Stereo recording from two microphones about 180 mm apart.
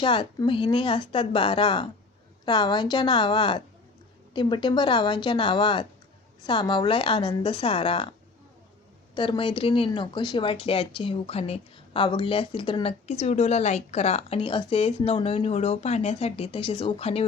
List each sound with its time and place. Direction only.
0.0 s speech: 25° left (ahead or behind)
9.1 s speech: 25° left (ahead or behind)